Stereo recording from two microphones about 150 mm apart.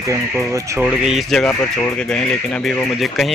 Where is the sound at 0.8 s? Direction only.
5° right (ahead or behind).